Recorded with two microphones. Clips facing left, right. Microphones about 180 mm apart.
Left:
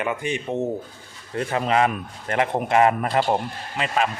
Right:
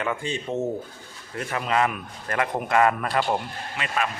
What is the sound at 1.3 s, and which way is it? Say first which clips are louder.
A man's voice: left 4 dB; 30° left (ahead or behind).